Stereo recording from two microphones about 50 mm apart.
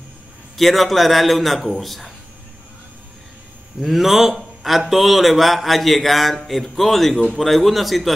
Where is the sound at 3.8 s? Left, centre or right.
Centre.